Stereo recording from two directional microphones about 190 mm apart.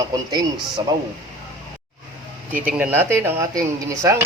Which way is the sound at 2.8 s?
10° right (ahead or behind).